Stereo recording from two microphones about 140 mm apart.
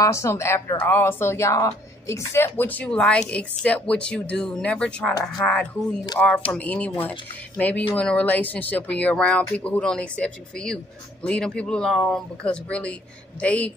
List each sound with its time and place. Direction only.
0.0 s speech: 20° left (ahead or behind)